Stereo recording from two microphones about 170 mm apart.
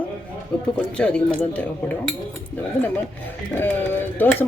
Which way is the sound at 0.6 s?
5° left (ahead or behind).